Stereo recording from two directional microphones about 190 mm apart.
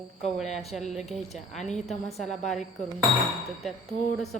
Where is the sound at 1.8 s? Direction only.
35° left (ahead or behind).